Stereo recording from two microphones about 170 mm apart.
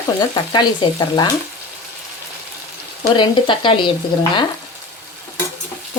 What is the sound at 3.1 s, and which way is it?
Speech, 30° left (ahead or behind).